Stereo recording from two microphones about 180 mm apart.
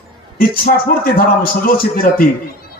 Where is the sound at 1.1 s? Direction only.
55° left (ahead or behind).